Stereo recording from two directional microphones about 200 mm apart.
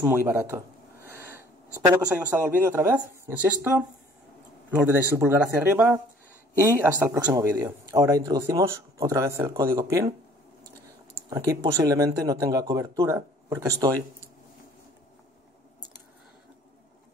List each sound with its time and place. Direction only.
0.0 s a sound: 10° right (ahead or behind)
1.9 s speech: 10° right (ahead or behind)
4.6 s speech: 10° right (ahead or behind)
11.2 s speech: 15° right (ahead or behind)